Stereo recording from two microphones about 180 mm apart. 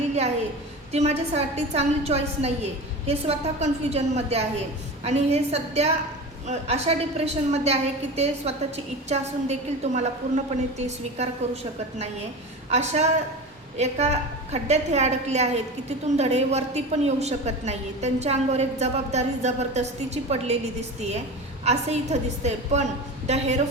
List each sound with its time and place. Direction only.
0.9 s a woman's voice: 40° right (ahead or behind)
21.6 s a woman's voice: 35° right (ahead or behind)